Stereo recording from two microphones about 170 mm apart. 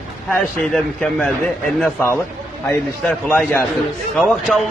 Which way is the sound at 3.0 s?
5° left (ahead or behind).